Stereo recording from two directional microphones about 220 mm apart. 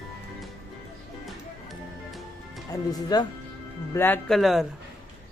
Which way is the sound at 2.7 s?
15° left (ahead or behind).